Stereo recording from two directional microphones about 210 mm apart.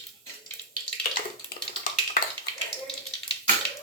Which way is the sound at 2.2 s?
40° left (ahead or behind).